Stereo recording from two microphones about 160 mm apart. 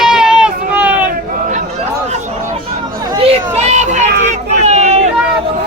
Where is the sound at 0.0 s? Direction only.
5° right (ahead or behind).